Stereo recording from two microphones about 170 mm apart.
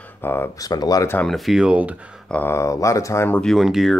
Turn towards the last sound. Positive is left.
turn(degrees=0)  # may be behind; listen again after turning